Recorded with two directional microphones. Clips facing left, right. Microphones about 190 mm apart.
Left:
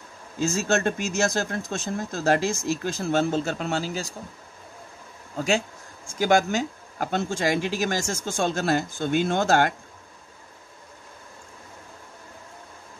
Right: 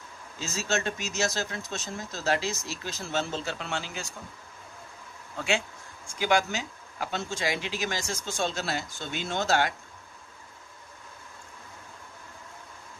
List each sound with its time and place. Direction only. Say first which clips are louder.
0.4 s speech: left 7 dB; 50° left (ahead or behind)
5.3 s speech: left 5 dB; 40° left (ahead or behind)